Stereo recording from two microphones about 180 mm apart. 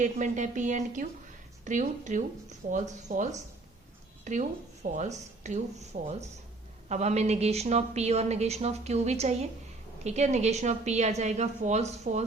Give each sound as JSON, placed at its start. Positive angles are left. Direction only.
{"t": 0.0, "sound": "a woman's voice", "side_deg": -45}